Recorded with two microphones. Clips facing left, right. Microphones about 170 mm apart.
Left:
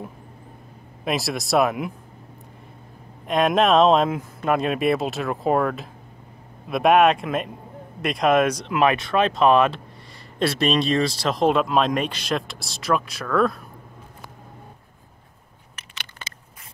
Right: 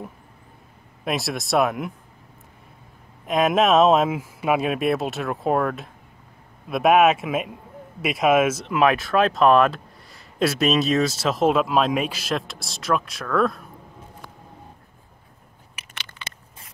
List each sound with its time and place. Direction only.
1.0 s speech: centre (ahead or behind)
3.3 s speech: centre (ahead or behind)
15.8 s a sound: 10° right (ahead or behind)
16.2 s biting: 50° left (ahead or behind)